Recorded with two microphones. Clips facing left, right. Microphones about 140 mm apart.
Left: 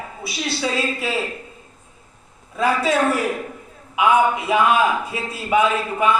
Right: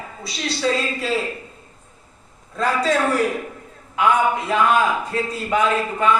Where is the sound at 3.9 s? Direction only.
10° left (ahead or behind).